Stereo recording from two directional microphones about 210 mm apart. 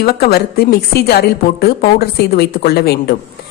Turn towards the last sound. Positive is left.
turn(degrees=45)  # may be behind; listen again after turning